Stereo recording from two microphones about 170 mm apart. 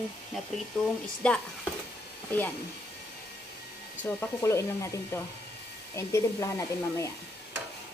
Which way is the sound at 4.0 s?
15° left (ahead or behind).